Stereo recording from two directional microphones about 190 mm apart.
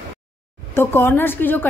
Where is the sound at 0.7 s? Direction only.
10° left (ahead or behind).